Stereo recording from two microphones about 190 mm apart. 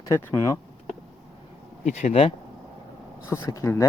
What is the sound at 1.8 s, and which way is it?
Speech, 40° left (ahead or behind).